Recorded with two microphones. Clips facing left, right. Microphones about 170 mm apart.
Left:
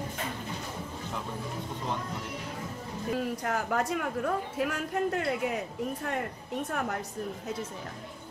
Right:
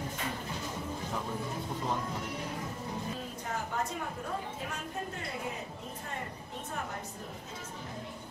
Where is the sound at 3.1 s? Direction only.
75° left (ahead or behind).